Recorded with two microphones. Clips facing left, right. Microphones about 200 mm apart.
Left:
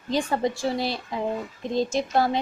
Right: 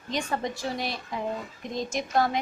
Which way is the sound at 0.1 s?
30° left (ahead or behind).